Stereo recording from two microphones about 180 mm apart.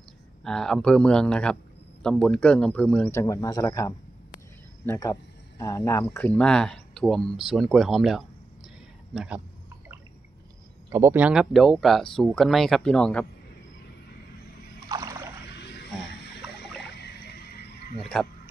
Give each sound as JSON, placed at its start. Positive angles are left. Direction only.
{"t": 0.4, "sound": "a man's voice", "side_deg": 5}
{"t": 10.9, "sound": "speech", "side_deg": -15}
{"t": 14.9, "sound": "rowboat", "side_deg": -20}
{"t": 17.0, "sound": "a sound", "side_deg": 65}
{"t": 18.1, "sound": "speech", "side_deg": 0}